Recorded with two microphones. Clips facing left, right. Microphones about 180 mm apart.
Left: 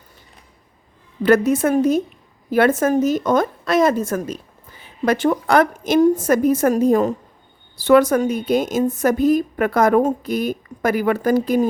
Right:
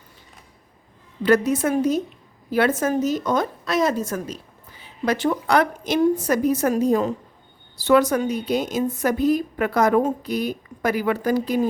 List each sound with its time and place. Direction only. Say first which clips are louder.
1.2 s a woman's voice: left 3 dB; 50° left (ahead or behind)